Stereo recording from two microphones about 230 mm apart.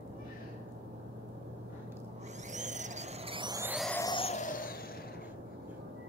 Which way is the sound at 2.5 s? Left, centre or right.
Right.